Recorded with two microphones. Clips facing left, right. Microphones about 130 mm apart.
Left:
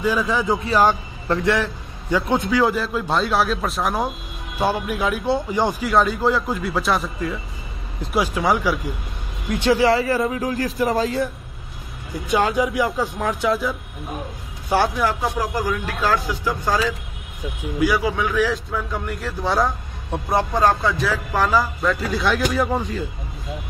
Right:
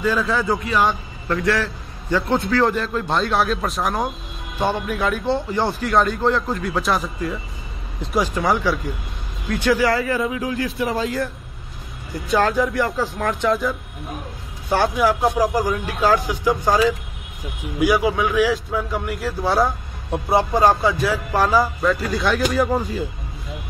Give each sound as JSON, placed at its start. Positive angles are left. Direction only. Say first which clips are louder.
{"t": 0.0, "sound": "speech", "louder": "even", "side_deg": 15}
{"t": 0.7, "sound": "a man's voice", "louder": "left 2 dB", "side_deg": 35}
{"t": 1.4, "sound": "a man's voice", "louder": "right 1 dB", "side_deg": 20}
{"t": 9.5, "sound": "speech", "louder": "left 1 dB", "side_deg": 25}
{"t": 10.1, "sound": "a man's voice", "louder": "left 1 dB", "side_deg": 40}
{"t": 12.3, "sound": "speech", "louder": "right 1 dB", "side_deg": 10}
{"t": 15.0, "sound": "a man's voice", "louder": "right 4 dB", "side_deg": -10}